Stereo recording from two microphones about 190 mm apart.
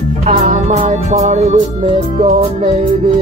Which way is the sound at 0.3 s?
40° right (ahead or behind).